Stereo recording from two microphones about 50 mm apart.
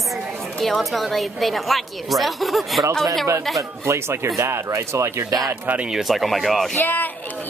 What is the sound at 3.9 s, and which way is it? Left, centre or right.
Speech, right.